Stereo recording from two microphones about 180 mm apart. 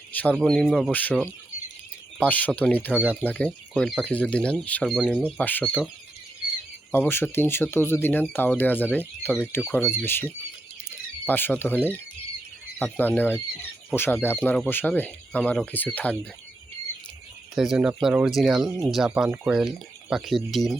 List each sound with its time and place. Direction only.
0.1 s speech: 10° left (ahead or behind)
6.9 s speech: 10° left (ahead or behind)
10.8 s a sound: 10° left (ahead or behind)
12.8 s speech: 10° left (ahead or behind)
17.5 s speech: centre (ahead or behind)